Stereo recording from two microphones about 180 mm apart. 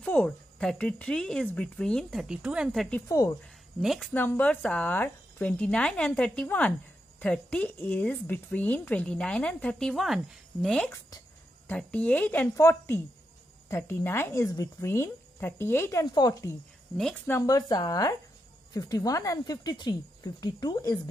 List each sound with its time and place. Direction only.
0.0 s speech: 5° left (ahead or behind)
3.1 s speech: 20° left (ahead or behind)
3.8 s speech: centre (ahead or behind)
4.1 s speech: 10° left (ahead or behind)
16.9 s speech: centre (ahead or behind)
17.3 s speech: 20° left (ahead or behind)